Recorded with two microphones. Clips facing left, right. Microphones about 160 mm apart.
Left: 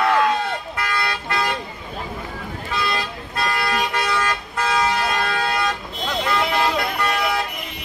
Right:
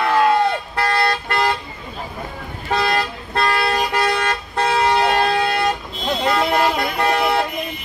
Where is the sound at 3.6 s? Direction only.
30° right (ahead or behind).